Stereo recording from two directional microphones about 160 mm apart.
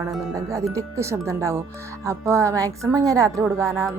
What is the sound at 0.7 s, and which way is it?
Speech, 20° right (ahead or behind).